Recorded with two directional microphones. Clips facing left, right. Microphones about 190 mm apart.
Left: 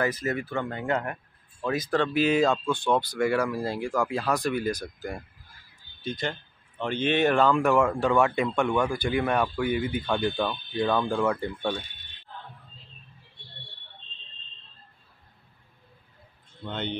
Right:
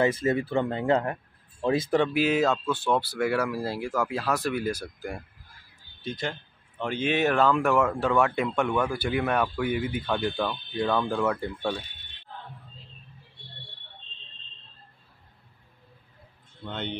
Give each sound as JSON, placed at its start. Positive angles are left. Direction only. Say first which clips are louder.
{"t": 0.0, "sound": "speech", "louder": "right 4 dB", "side_deg": -25}
{"t": 1.9, "sound": "speech", "louder": "left 3 dB", "side_deg": -10}
{"t": 6.0, "sound": "speech", "louder": "left 1 dB", "side_deg": -5}
{"t": 16.6, "sound": "speech", "louder": "left 1 dB", "side_deg": -5}